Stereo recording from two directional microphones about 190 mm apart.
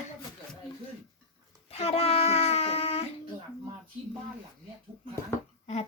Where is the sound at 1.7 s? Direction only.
30° left (ahead or behind).